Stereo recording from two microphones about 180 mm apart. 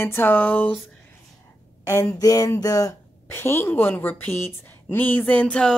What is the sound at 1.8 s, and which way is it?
Speech, 15° left (ahead or behind).